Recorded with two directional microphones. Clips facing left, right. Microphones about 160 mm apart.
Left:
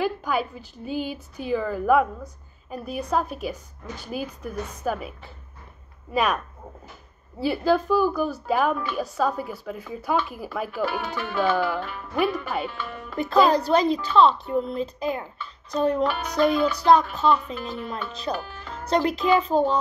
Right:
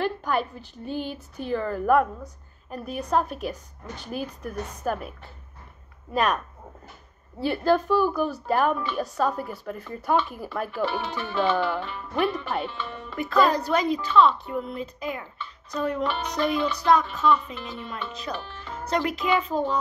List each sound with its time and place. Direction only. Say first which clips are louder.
0.0 s a woman's voice: left 1 dB; 5° left (ahead or behind)
13.1 s a child's voice: left 3 dB; 30° left (ahead or behind)
18.3 s a child's voice: left 4 dB; 30° left (ahead or behind)